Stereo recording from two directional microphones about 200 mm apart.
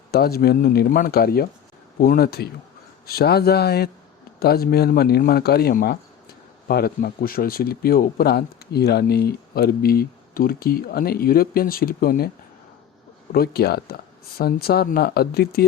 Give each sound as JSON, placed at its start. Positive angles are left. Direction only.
{"t": 0.1, "sound": "speech", "side_deg": 50}
{"t": 13.3, "sound": "speech", "side_deg": 50}